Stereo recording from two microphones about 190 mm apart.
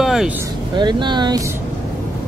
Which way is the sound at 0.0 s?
Centre (ahead or behind).